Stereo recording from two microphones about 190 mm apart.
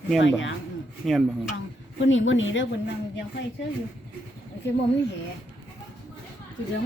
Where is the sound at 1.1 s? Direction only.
Centre (ahead or behind).